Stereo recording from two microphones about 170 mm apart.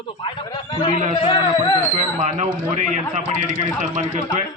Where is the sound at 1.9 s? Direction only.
45° right (ahead or behind).